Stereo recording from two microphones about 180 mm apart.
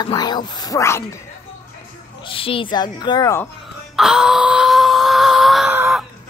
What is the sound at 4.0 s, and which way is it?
Wail, centre (ahead or behind).